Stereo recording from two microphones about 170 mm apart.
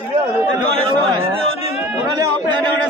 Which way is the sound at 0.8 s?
30° right (ahead or behind).